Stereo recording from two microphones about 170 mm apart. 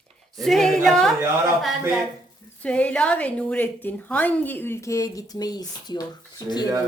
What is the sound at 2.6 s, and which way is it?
A woman's voice, 5° left (ahead or behind).